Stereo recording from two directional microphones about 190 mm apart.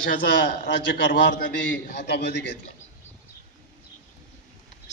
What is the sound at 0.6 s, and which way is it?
A man's voice, 70° left (ahead or behind).